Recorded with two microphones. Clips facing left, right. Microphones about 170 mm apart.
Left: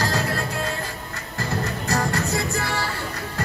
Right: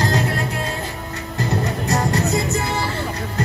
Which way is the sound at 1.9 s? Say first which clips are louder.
Right 3 dB; 20° right (ahead or behind).